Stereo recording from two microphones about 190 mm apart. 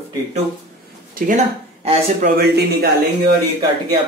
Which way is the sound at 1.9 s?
35° right (ahead or behind).